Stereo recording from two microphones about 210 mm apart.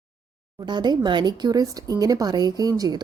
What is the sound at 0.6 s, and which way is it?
Speech, 20° right (ahead or behind).